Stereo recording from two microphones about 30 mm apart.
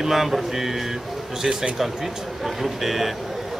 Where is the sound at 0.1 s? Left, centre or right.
Centre.